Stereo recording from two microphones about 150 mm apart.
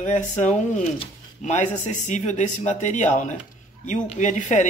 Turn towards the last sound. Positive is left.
turn(degrees=55)  # may be behind; listen again after turning